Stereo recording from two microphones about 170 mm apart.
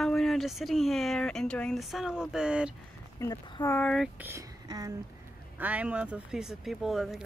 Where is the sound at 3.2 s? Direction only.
20° left (ahead or behind).